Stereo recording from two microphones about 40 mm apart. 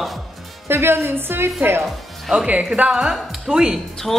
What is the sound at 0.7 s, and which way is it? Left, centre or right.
A woman's voice, right.